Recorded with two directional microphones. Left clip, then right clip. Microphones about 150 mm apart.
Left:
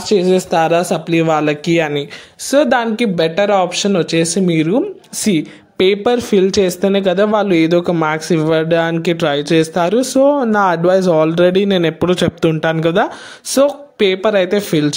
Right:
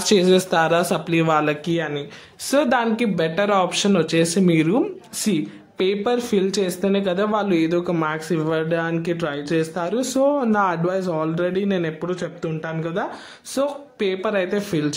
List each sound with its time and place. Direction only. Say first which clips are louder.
0.0 s a man's voice: left 4 dB; centre (ahead or behind)
0.3 s speech: left 4 dB; 15° left (ahead or behind)
1.7 s speech: left 9 dB; 45° left (ahead or behind)
2.5 s speech: left 6 dB; 25° left (ahead or behind)
5.2 s speech: left 7 dB; 40° left (ahead or behind)
9.9 s speech: left 6 dB; 35° left (ahead or behind)